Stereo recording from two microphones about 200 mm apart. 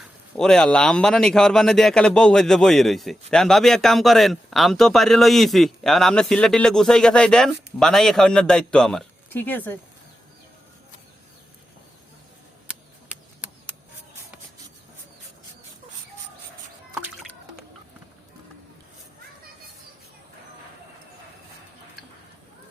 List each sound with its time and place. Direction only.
0.3 s speech: 5° left (ahead or behind)